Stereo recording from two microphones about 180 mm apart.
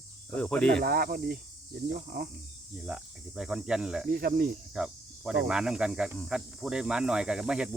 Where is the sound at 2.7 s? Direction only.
5° right (ahead or behind).